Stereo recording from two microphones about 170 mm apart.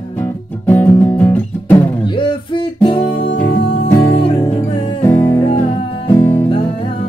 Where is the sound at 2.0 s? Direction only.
30° left (ahead or behind).